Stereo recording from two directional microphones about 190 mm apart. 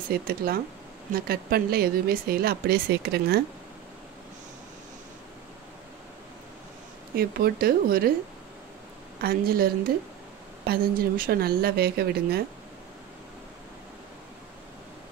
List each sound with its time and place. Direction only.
0.1 s speech: 55° right (ahead or behind)
7.2 s speech: 55° right (ahead or behind)
9.2 s a woman's voice: 55° right (ahead or behind)